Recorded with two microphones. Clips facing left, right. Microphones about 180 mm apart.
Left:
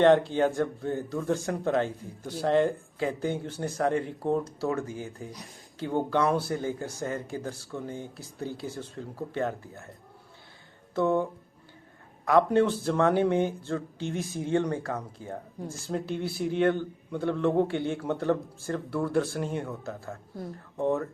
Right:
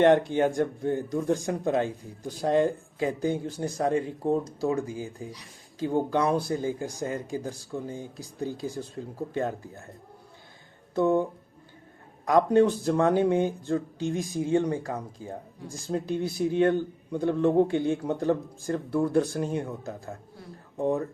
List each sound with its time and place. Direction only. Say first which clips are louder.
0.3 s speech: right 1 dB; 15° right (ahead or behind)
10.9 s speech: right 2 dB; 15° right (ahead or behind)